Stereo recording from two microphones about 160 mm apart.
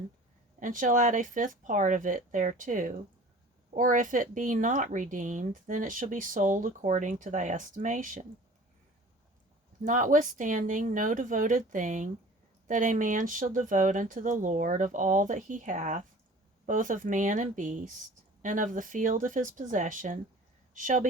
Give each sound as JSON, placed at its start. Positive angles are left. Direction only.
{"t": 0.6, "sound": "speech", "side_deg": -55}
{"t": 9.8, "sound": "speech", "side_deg": -55}